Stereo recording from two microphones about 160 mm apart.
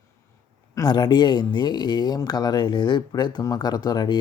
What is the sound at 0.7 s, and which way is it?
Speech, 25° left (ahead or behind).